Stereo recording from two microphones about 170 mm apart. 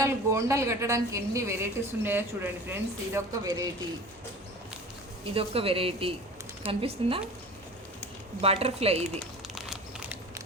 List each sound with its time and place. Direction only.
0.0 s a woman's voice: 15° right (ahead or behind)
5.2 s speech: 35° right (ahead or behind)
8.4 s speech: 35° right (ahead or behind)
9.6 s crumpling: centre (ahead or behind)